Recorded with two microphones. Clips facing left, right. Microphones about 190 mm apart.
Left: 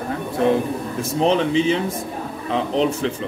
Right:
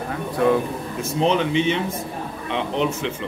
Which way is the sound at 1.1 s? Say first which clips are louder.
Left 2 dB; 35° left (ahead or behind).